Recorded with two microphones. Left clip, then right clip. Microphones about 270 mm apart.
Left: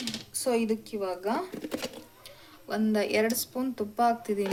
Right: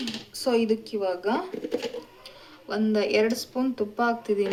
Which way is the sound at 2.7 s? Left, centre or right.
Left.